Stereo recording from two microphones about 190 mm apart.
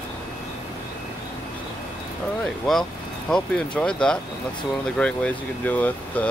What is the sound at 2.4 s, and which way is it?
Speech, 5° left (ahead or behind).